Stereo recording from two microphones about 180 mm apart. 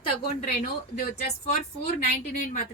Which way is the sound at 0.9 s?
50° left (ahead or behind).